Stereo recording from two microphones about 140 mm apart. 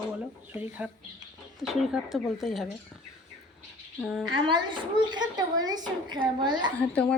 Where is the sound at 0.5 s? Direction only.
10° right (ahead or behind).